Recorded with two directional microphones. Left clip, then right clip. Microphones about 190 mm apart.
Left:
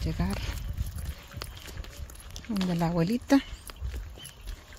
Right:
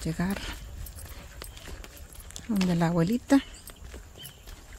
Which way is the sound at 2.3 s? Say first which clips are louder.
Right 1 dB; 15° right (ahead or behind).